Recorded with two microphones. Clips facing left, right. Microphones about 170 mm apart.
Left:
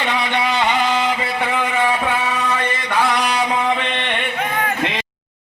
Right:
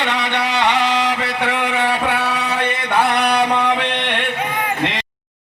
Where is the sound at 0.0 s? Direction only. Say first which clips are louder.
Even; 70° right (ahead or behind).